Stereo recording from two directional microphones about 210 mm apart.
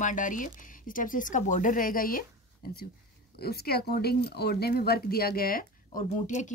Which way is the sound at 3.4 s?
50° left (ahead or behind).